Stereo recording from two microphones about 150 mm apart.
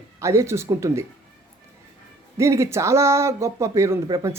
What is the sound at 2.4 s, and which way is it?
Speech, 20° right (ahead or behind).